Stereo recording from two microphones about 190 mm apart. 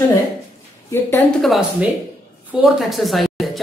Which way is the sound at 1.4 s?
Centre (ahead or behind).